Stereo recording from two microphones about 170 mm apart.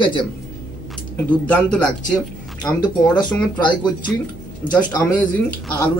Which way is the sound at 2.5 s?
25° left (ahead or behind).